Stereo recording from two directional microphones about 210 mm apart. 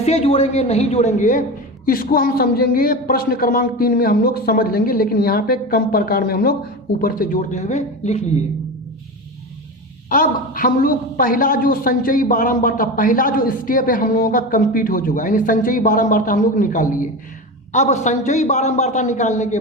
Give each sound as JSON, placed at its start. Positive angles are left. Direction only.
{"t": 0.0, "sound": "a woman's voice", "side_deg": 30}
{"t": 10.1, "sound": "a woman's voice", "side_deg": 40}